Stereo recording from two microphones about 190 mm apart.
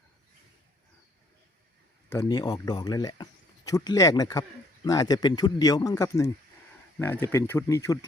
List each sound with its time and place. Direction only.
2.0 s speech: 20° left (ahead or behind)